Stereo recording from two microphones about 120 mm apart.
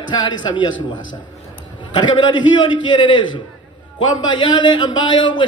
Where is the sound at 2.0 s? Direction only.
40° left (ahead or behind).